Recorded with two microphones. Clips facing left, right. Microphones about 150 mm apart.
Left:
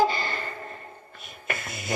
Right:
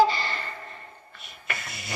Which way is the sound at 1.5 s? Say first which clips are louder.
Left 4 dB; 45° left (ahead or behind).